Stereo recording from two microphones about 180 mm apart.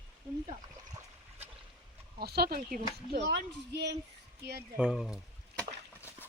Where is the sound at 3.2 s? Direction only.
70° right (ahead or behind).